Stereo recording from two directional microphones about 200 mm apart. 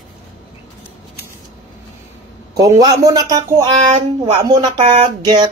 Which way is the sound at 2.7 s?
20° right (ahead or behind).